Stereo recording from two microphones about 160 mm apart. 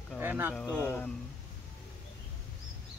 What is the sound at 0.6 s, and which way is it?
Speech, 10° left (ahead or behind).